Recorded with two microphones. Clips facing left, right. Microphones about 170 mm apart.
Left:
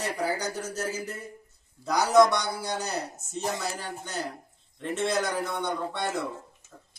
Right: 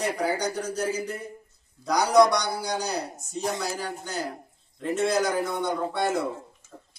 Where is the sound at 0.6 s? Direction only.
5° left (ahead or behind).